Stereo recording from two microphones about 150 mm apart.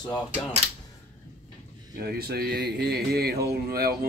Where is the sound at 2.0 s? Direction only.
90° right.